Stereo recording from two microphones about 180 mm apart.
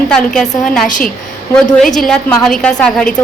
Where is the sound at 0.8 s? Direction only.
45° left (ahead or behind).